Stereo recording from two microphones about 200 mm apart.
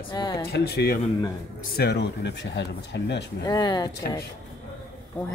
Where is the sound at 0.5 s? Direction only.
55° left (ahead or behind).